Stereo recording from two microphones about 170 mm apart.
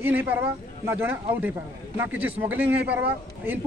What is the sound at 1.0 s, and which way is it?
A man's voice, 10° right (ahead or behind).